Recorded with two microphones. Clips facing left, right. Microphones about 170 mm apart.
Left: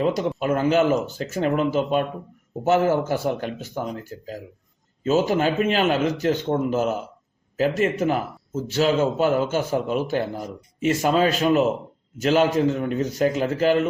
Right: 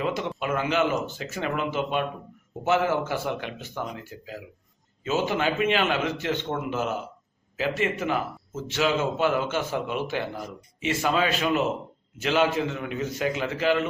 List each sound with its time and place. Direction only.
0.0 s speech: 40° left (ahead or behind)